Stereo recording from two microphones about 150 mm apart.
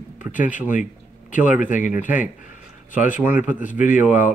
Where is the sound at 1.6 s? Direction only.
60° left (ahead or behind).